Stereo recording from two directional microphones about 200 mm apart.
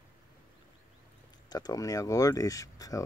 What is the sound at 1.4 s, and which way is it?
Speech, 20° left (ahead or behind).